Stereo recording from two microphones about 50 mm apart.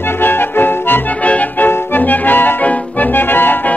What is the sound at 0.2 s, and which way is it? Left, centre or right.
Music, left.